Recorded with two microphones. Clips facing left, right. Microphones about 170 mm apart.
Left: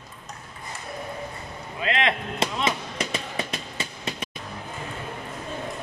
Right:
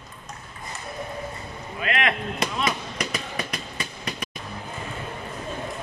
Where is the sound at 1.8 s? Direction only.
25° left (ahead or behind).